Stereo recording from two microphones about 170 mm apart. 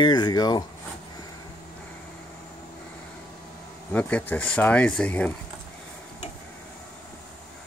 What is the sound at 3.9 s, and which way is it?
Speech, 10° left (ahead or behind).